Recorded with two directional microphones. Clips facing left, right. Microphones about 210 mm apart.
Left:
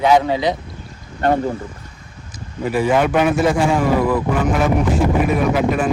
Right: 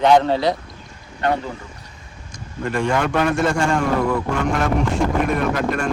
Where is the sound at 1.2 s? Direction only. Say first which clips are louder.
Left 4 dB; 45° left (ahead or behind).